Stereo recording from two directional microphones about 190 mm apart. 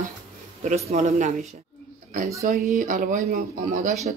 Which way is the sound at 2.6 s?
45° right (ahead or behind).